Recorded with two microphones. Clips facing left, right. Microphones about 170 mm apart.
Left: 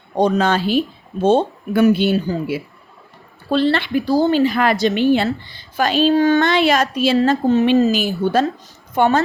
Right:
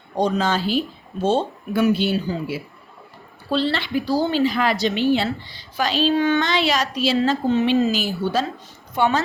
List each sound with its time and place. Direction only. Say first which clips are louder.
0.2 s a woman's voice: left 4 dB; 60° left (ahead or behind); by 6.4 s 40° left (ahead or behind)
6.4 s a woman's voice: left 6 dB; 55° left (ahead or behind)